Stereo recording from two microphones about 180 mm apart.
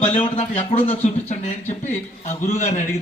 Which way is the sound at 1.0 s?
40° left (ahead or behind).